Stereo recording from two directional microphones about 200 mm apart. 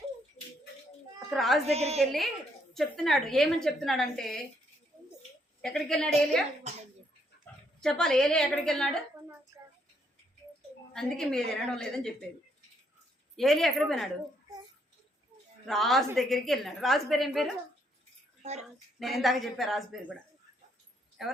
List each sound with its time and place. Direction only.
1.3 s a woman's voice: centre (ahead or behind)
1.6 s a woman's voice: 30° right (ahead or behind)
2.0 s a woman's voice: centre (ahead or behind)
5.6 s a woman's voice: centre (ahead or behind)
6.7 s a sound: 35° right (ahead or behind)
7.8 s a woman's voice: 5° left (ahead or behind)
10.9 s a woman's voice: 5° left (ahead or behind)
13.3 s a woman's voice: centre (ahead or behind)
15.6 s a woman's voice: centre (ahead or behind)
18.9 s a woman's voice: centre (ahead or behind)
21.2 s speech: centre (ahead or behind)